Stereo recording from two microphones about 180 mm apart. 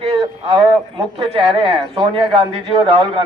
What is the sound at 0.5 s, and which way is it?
Speech, 30° right (ahead or behind).